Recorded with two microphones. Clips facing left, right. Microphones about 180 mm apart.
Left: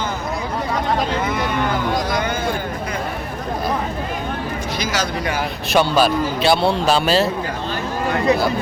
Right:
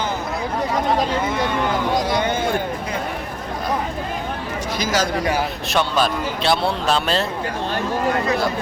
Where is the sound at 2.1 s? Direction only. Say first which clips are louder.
Right 1 dB; 25° right (ahead or behind).